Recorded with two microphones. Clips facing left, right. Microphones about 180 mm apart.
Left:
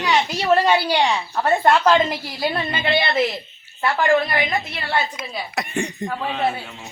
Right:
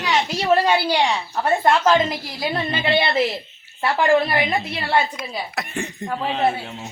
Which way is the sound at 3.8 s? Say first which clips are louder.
Right 1 dB; 15° right (ahead or behind).